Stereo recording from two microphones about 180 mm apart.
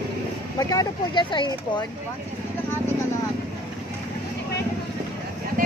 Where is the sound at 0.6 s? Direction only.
20° left (ahead or behind).